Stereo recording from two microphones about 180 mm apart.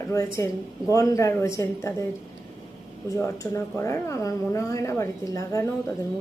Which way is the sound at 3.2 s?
15° left (ahead or behind).